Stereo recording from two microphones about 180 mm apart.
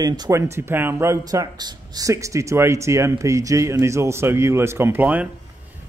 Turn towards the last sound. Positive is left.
turn(degrees=-10)  # may be behind; listen again after turning